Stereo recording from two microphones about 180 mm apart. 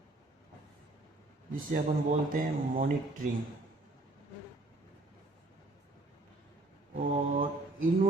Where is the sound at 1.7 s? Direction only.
50° right (ahead or behind).